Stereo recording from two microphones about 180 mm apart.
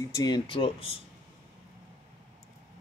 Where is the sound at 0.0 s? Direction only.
20° left (ahead or behind).